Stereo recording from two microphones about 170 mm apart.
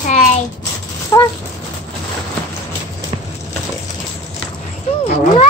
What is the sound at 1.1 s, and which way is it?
Speech, 15° left (ahead or behind).